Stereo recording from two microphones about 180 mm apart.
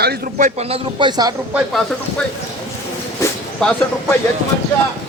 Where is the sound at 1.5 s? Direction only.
Centre (ahead or behind).